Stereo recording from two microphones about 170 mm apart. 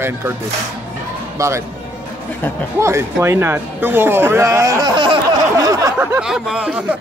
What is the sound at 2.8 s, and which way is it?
Speech, 15° right (ahead or behind).